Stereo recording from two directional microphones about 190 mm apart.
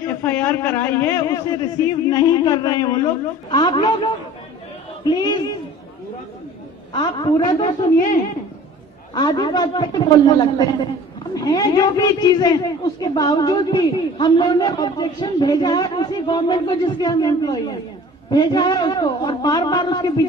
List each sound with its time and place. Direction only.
0.2 s a man's voice: 10° left (ahead or behind)
6.9 s a man's voice: 25° left (ahead or behind)
9.1 s a man's voice: 20° left (ahead or behind)